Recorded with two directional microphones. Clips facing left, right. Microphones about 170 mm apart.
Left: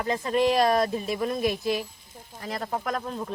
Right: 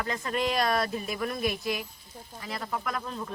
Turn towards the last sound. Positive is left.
turn(degrees=40)  # may be behind; listen again after turning